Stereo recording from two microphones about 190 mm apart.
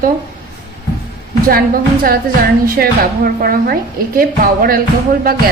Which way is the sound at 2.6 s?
50° right (ahead or behind).